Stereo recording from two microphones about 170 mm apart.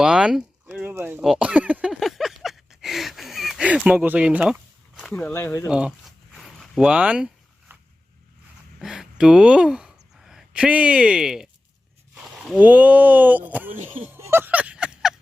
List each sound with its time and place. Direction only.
0.0 s a sound: 5° right (ahead or behind)
5.3 s speech: 15° left (ahead or behind)
5.6 s zipper: 5° right (ahead or behind)
8.8 s speech: 5° right (ahead or behind)
13.7 s speech: 45° right (ahead or behind)
14.0 s a sound: 15° right (ahead or behind)